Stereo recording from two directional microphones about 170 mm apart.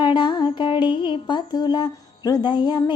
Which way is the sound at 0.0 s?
25° left (ahead or behind).